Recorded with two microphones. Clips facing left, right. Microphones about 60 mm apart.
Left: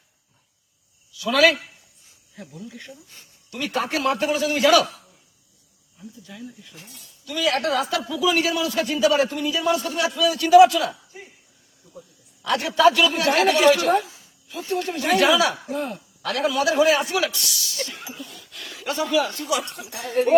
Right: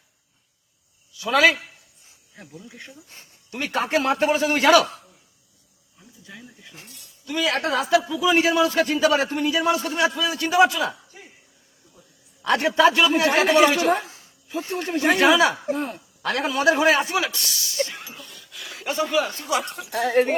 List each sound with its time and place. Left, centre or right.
1.1 s a man's voice: right
2.0 s cricket: right
2.6 s a man's voice: right
6.2 s a man's voice: right
8.2 s a man's voice: right
12.4 s a man's voice: right
18.1 s a sound: centre
18.7 s speech: right
19.7 s a woman's voice: right